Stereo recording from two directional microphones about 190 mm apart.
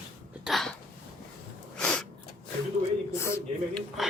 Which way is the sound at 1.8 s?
5° left (ahead or behind).